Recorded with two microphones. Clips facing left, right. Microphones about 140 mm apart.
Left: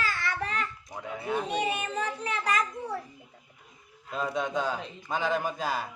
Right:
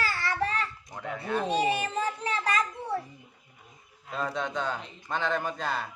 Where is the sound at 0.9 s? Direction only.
10° left (ahead or behind).